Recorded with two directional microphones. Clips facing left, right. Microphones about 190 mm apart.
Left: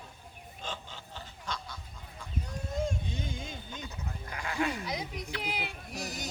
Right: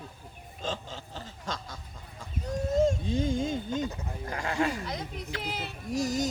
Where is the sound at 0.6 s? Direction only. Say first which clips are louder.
Right 7 dB; 40° right (ahead or behind).